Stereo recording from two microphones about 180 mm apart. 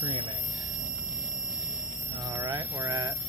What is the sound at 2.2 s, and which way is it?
Speech, 15° right (ahead or behind).